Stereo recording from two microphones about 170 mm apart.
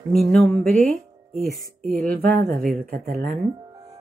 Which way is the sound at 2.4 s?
55° right (ahead or behind).